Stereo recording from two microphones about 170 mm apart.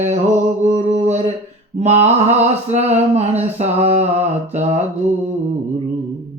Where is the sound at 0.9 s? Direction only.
40° right (ahead or behind).